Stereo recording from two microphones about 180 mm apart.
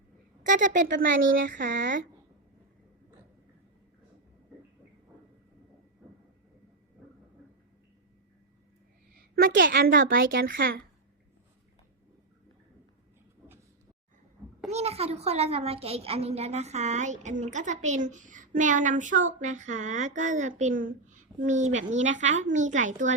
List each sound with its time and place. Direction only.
0.4 s a woman's voice: 45° right (ahead or behind)
9.1 s a woman's voice: 55° right (ahead or behind)
14.7 s a child's voice: 35° right (ahead or behind)